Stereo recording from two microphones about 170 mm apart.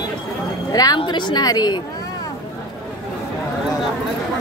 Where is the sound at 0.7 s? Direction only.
20° left (ahead or behind).